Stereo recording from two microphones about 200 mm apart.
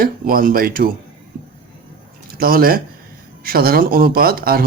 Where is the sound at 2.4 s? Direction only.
45° right (ahead or behind).